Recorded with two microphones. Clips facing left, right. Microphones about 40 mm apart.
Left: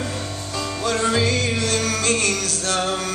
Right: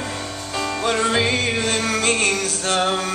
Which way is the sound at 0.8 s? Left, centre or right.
Right.